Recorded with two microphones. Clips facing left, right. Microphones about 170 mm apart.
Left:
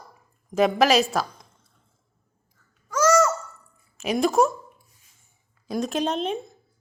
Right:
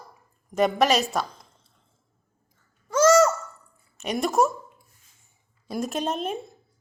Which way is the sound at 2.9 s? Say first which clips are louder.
Right 2 dB; 25° right (ahead or behind).